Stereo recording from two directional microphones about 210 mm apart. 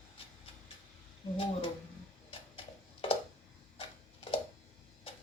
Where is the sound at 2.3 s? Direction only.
25° left (ahead or behind).